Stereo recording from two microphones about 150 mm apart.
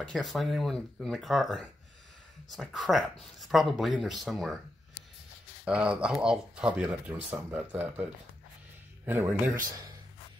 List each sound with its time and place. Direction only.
0.0 s speech: centre (ahead or behind)
5.7 s speech: 5° right (ahead or behind)